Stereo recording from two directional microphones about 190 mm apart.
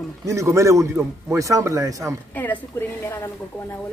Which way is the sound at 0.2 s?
15° right (ahead or behind).